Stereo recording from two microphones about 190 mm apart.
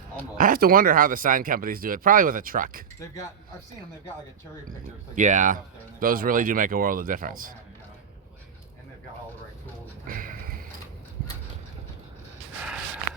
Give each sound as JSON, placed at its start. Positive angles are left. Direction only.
{"t": 0.3, "sound": "speech", "side_deg": -45}
{"t": 5.1, "sound": "speech", "side_deg": -40}
{"t": 10.1, "sound": "a sound", "side_deg": -45}